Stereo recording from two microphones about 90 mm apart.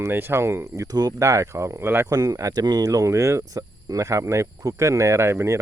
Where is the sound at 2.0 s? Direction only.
40° right (ahead or behind).